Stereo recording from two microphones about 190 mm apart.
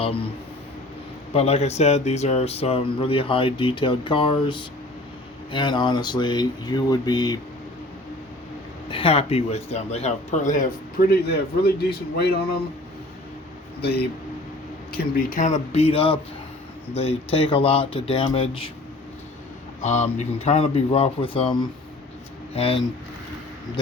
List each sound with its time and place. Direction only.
1.3 s speech: 35° left (ahead or behind)
8.9 s speech: 30° left (ahead or behind)
11.1 s a man's voice: 55° left (ahead or behind)
13.8 s a man's voice: 60° left (ahead or behind)
14.9 s speech: 45° left (ahead or behind); by 18.7 s 30° left (ahead or behind)
19.8 s speech: 40° left (ahead or behind)